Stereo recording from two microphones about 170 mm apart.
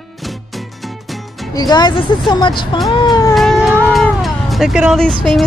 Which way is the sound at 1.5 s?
25° left (ahead or behind).